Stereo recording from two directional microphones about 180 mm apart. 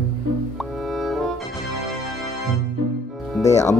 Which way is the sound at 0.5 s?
Centre (ahead or behind).